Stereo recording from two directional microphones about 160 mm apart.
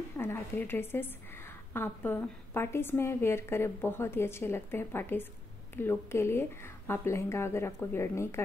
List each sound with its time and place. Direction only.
0.2 s a woman's voice: 15° left (ahead or behind)